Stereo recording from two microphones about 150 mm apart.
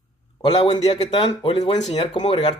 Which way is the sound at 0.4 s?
35° left (ahead or behind).